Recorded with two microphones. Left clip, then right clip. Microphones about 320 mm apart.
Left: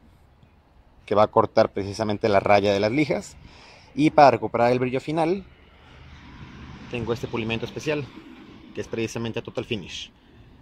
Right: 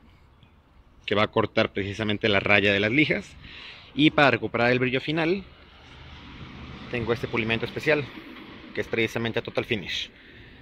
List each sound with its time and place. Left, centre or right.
1.0 s a man's voice: centre
6.9 s a man's voice: centre